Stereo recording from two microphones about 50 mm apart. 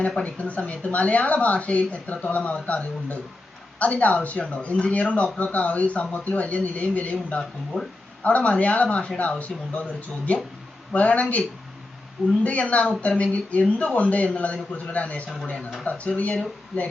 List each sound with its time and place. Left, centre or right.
0.3 s speech: left
7.7 s speech: centre
8.2 s speech: left
10.9 s speech: left